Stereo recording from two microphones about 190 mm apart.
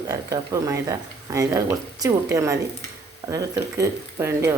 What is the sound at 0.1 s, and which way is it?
Speech, 15° right (ahead or behind).